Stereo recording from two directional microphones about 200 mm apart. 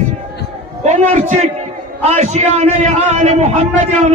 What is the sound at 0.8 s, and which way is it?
A man's voice, 35° right (ahead or behind).